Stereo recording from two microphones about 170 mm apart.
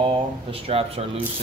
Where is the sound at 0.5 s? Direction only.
35° right (ahead or behind).